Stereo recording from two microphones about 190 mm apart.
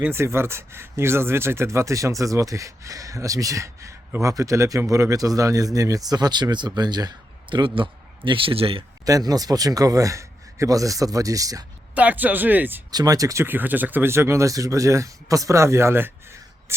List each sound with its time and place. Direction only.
0.0 s speech: 15° right (ahead or behind); by 8.8 s 30° right (ahead or behind)
9.0 s speech: 20° right (ahead or behind)
12.9 s speech: 20° right (ahead or behind)